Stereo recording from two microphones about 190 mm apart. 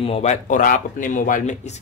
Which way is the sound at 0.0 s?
35° left (ahead or behind).